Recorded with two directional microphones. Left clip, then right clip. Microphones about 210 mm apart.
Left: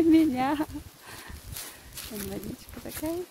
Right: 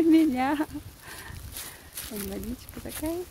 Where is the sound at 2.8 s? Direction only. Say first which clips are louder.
Right 1 dB; 5° right (ahead or behind).